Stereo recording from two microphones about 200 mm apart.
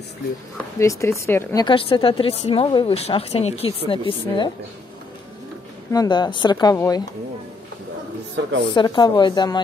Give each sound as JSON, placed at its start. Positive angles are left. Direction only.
{"t": 0.6, "sound": "speech", "side_deg": 15}
{"t": 5.9, "sound": "speech", "side_deg": 20}
{"t": 8.5, "sound": "a woman's voice", "side_deg": -65}
{"t": 8.7, "sound": "speech", "side_deg": 20}